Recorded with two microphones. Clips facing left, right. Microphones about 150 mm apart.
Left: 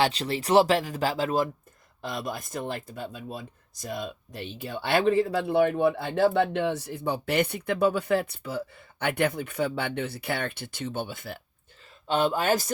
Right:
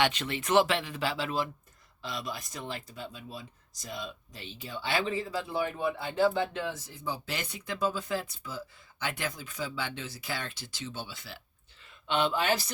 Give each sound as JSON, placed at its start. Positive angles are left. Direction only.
{"t": 0.0, "sound": "speech", "side_deg": 35}
{"t": 12.0, "sound": "speech", "side_deg": 40}